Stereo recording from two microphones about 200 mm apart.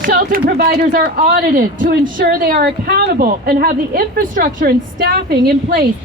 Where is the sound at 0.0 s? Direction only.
45° right (ahead or behind).